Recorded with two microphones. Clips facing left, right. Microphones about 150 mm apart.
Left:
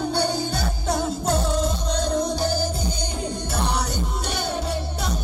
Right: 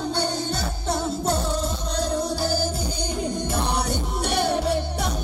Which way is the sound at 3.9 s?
65° right (ahead or behind).